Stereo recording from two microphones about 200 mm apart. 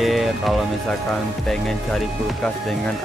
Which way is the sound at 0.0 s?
Centre (ahead or behind).